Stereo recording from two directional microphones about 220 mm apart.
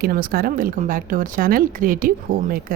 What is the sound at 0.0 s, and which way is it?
Speech, 40° right (ahead or behind).